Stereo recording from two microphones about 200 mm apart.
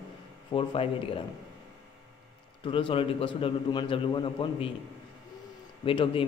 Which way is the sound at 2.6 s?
25° left (ahead or behind).